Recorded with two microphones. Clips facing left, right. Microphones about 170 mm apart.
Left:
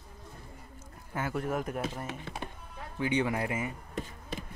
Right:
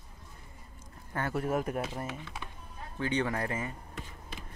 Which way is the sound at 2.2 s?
45° left (ahead or behind).